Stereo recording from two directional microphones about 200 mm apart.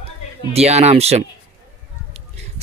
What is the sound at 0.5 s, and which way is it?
Speech, 30° right (ahead or behind).